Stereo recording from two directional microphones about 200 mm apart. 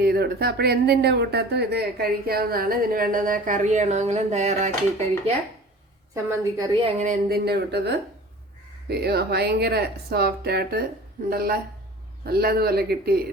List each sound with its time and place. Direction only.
0.0 s speech: 50° right (ahead or behind); by 5.3 s 35° right (ahead or behind)
6.1 s a woman's voice: 15° right (ahead or behind)
6.8 s speech: 40° right (ahead or behind)